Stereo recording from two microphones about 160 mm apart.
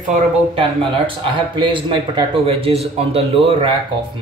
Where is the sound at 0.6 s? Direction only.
35° right (ahead or behind).